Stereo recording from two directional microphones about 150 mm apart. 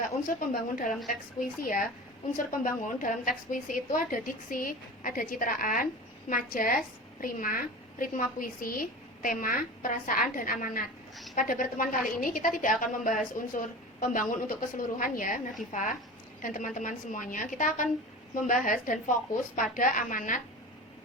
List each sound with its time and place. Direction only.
0.3 s a woman's voice: 65° left (ahead or behind)